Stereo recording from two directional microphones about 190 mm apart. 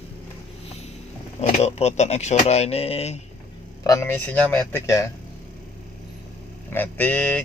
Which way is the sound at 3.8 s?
15° left (ahead or behind).